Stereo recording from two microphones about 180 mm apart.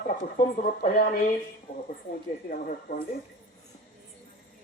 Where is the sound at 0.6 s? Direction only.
45° left (ahead or behind).